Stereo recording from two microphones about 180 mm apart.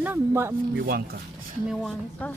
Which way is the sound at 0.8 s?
60° right (ahead or behind).